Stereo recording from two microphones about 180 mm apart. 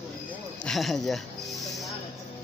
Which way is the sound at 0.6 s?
Centre (ahead or behind).